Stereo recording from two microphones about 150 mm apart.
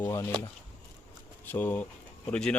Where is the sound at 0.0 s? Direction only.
20° left (ahead or behind).